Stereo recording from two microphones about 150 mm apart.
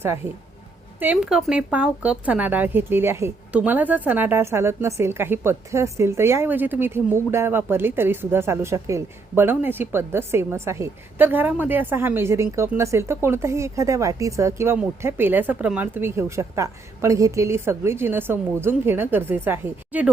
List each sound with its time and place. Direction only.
0.9 s speech: 10° right (ahead or behind)